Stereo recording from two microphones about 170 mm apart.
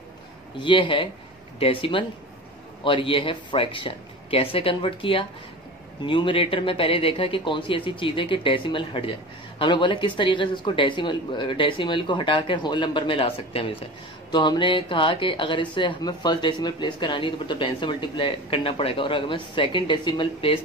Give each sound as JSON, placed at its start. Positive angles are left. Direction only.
{"t": 0.6, "sound": "speech", "side_deg": 30}